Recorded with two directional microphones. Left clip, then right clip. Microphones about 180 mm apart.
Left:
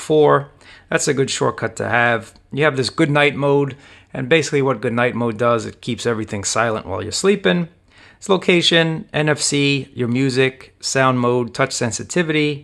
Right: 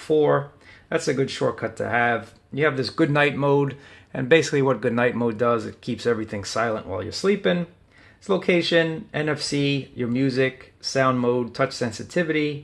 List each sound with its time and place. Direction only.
0.0 s speech: 40° left (ahead or behind)
3.1 s speech: 25° left (ahead or behind)